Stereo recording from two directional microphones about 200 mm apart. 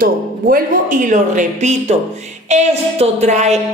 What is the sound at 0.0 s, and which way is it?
A woman's voice, 45° right (ahead or behind).